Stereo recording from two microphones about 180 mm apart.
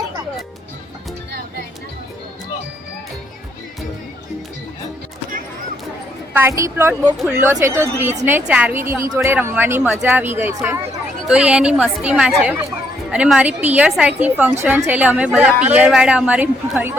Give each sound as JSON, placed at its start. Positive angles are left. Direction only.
{"t": 6.3, "sound": "a woman's voice", "side_deg": -15}